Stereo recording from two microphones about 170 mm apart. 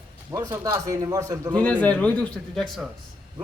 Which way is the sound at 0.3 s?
20° right (ahead or behind).